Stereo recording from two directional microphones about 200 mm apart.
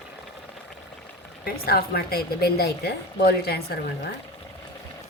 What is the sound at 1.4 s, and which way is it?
A woman's voice, 50° left (ahead or behind).